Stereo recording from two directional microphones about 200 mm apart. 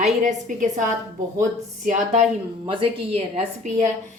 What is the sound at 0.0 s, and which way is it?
A woman's voice, 35° right (ahead or behind).